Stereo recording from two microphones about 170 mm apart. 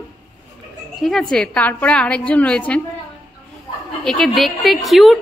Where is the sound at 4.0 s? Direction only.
5° left (ahead or behind).